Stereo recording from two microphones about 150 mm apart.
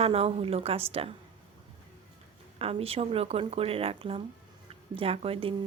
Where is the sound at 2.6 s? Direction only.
40° right (ahead or behind).